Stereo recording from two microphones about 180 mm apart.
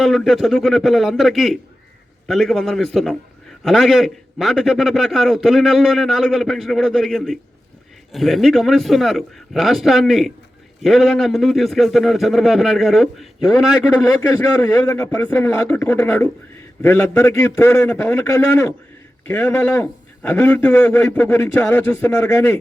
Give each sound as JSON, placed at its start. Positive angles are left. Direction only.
{"t": 0.0, "sound": "a man's voice", "side_deg": 0}
{"t": 14.2, "sound": "a man's voice", "side_deg": 15}